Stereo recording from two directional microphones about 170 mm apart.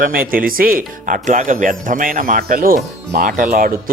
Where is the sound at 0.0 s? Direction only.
60° right (ahead or behind).